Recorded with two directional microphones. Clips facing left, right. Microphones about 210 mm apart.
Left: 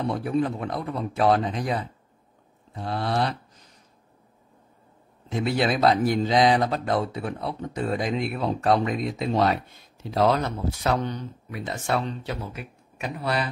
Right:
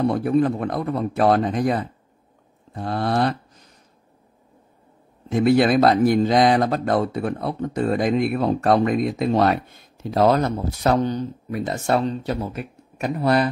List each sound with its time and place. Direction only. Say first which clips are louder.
0.1 s speech: right 6 dB; 50° right (ahead or behind)
5.3 s speech: right 8 dB; 50° right (ahead or behind)